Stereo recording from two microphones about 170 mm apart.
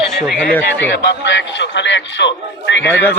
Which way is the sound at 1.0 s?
90° left.